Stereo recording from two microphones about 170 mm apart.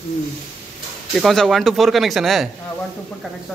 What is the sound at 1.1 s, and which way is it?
Speech, centre (ahead or behind).